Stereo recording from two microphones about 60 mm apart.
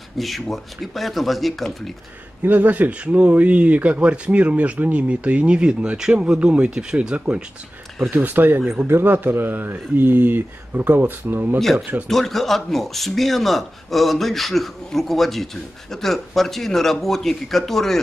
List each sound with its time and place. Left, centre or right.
0.2 s speech: centre
2.4 s speech: right
8.1 s speech: right
12.1 s speech: centre